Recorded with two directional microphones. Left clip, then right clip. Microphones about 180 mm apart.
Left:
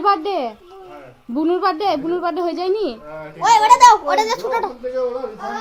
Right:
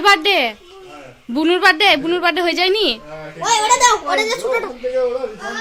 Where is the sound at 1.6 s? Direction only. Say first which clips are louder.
Right 6 dB; 5° right (ahead or behind).